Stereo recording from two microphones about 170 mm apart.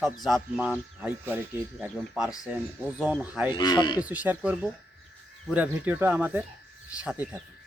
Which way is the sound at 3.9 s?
10° right (ahead or behind).